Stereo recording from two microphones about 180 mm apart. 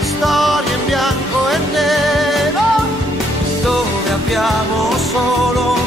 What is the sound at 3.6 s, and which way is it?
Music, centre (ahead or behind).